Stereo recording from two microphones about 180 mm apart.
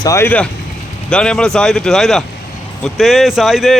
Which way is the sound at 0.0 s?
15° left (ahead or behind).